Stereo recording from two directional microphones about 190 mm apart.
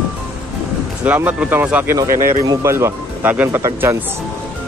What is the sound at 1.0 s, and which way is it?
Speech, 10° right (ahead or behind).